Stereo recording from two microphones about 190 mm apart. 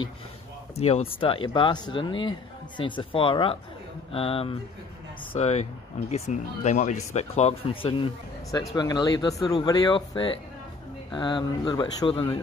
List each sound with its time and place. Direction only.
0.7 s speech: 35° left (ahead or behind)